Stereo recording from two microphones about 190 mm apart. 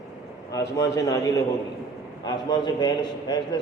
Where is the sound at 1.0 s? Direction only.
15° left (ahead or behind).